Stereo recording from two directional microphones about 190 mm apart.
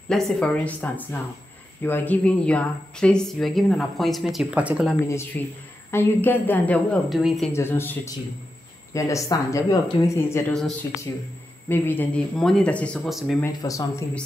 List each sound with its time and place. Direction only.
0.1 s speech: centre (ahead or behind)
5.4 s a woman's voice: 10° left (ahead or behind)
7.5 s a woman's voice: 10° left (ahead or behind)
11.7 s speech: 10° left (ahead or behind)
13.4 s a woman's voice: 15° left (ahead or behind)